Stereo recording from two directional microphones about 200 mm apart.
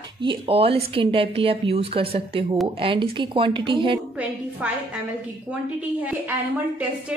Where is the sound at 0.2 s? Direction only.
25° right (ahead or behind).